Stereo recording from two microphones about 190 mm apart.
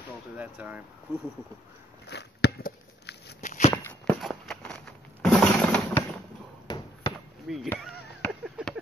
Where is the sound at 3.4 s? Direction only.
40° left (ahead or behind).